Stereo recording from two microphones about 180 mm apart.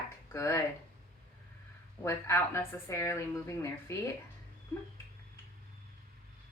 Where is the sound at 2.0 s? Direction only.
15° left (ahead or behind).